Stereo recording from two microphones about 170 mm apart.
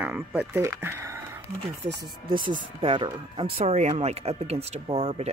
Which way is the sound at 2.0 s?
30° right (ahead or behind).